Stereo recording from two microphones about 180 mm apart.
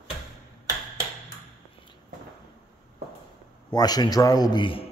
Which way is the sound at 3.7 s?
20° left (ahead or behind).